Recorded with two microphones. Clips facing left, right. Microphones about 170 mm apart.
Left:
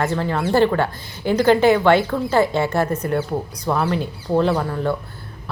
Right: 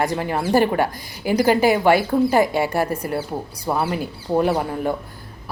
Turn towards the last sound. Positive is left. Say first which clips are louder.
# left 1 dB
turn(degrees=-15)  # may be behind; listen again after turning